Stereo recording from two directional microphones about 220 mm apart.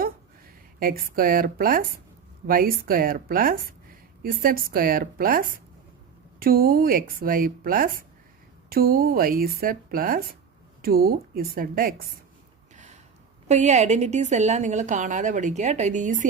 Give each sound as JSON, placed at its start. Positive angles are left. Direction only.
{"t": 0.8, "sound": "a woman's voice", "side_deg": -40}
{"t": 13.5, "sound": "a woman's voice", "side_deg": -30}